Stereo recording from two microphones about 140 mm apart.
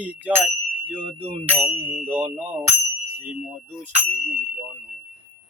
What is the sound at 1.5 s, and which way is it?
Speech, 10° right (ahead or behind).